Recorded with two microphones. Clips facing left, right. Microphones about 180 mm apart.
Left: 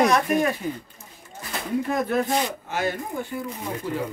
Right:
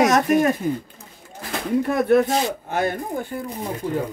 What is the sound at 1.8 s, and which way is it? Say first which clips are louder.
Speech: right 8 dB; 65° right (ahead or behind).